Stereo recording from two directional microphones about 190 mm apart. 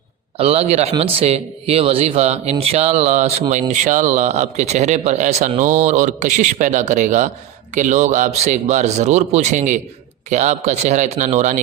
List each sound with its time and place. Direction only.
0.3 s speech: 30° right (ahead or behind)